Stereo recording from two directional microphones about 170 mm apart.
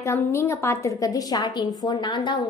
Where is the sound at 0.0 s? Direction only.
15° left (ahead or behind).